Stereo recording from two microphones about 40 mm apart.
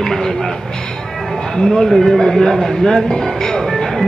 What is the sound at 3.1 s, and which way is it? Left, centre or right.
Music, centre.